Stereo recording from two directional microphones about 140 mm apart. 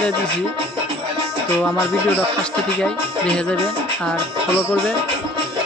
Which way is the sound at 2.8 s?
5° left (ahead or behind).